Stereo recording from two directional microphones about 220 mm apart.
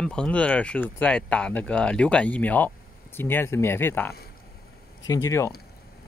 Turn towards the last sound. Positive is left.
turn(degrees=15)  # may be behind; listen again after turning